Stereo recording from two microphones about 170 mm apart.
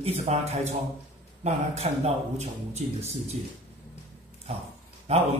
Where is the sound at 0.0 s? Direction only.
40° right (ahead or behind).